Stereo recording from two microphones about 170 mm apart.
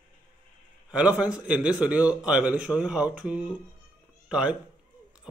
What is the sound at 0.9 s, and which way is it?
A man's voice, 10° right (ahead or behind).